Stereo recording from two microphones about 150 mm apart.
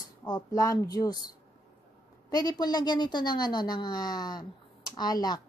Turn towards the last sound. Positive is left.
turn(degrees=25)  # may be behind; listen again after turning